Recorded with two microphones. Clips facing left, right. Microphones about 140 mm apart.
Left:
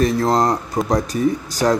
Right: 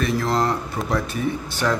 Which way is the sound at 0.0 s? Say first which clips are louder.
Left 5 dB; 40° left (ahead or behind).